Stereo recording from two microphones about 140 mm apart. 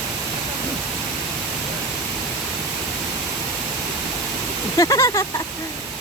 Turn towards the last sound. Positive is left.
turn(degrees=25)  # may be behind; listen again after turning